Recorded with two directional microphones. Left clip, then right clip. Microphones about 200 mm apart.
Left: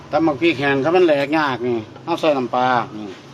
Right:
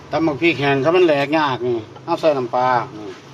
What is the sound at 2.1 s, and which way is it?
Speech, 40° left (ahead or behind).